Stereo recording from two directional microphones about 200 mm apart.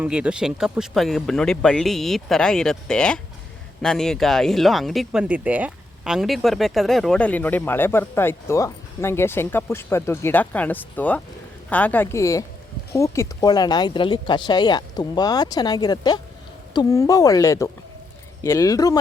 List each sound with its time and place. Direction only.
0.0 s speech: 5° right (ahead or behind); by 18.9 s 15° left (ahead or behind)